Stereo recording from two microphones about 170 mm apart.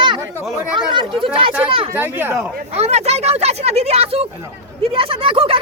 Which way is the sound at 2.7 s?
40° right (ahead or behind).